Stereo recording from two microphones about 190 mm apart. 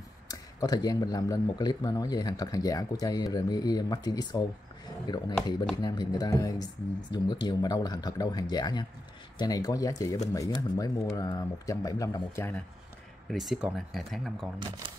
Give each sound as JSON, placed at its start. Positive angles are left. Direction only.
{"t": 0.3, "sound": "speech", "side_deg": 20}
{"t": 13.3, "sound": "speech", "side_deg": 0}